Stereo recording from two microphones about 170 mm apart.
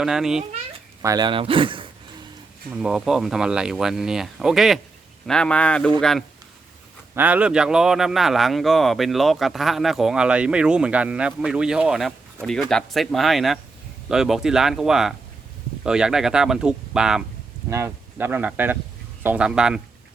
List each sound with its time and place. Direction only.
0.0 s speech: 5° right (ahead or behind)
1.0 s speech: 25° right (ahead or behind)
2.7 s speech: 5° right (ahead or behind)
7.2 s speech: 10° right (ahead or behind)
17.7 s speech: 15° right (ahead or behind)